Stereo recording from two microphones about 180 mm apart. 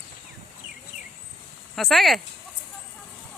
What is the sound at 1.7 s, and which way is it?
Speech, centre (ahead or behind).